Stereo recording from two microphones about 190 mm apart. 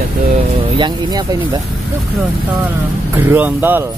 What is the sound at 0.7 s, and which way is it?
Speech, 20° right (ahead or behind).